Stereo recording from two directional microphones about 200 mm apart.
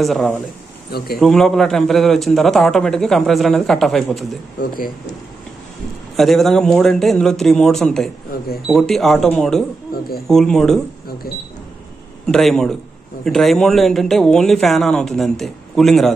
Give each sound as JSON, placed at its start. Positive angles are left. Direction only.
{"t": 0.0, "sound": "a man's voice", "side_deg": 0}
{"t": 0.9, "sound": "speech", "side_deg": 50}
{"t": 1.2, "sound": "a man's voice", "side_deg": 0}
{"t": 4.6, "sound": "speech", "side_deg": 45}
{"t": 6.1, "sound": "a man's voice", "side_deg": 0}
{"t": 12.3, "sound": "a man's voice", "side_deg": 0}